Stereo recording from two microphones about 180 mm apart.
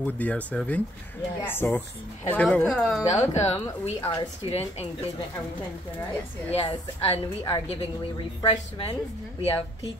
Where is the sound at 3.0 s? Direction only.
20° left (ahead or behind).